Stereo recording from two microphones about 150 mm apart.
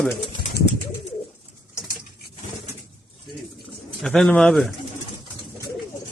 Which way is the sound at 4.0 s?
5° left (ahead or behind).